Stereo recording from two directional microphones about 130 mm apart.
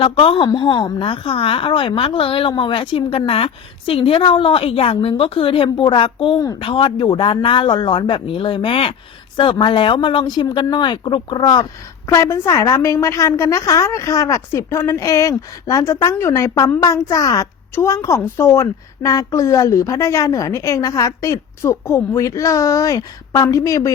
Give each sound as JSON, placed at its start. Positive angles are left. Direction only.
{"t": 0.0, "sound": "a woman's voice", "side_deg": 45}
{"t": 12.0, "sound": "a woman's voice", "side_deg": 20}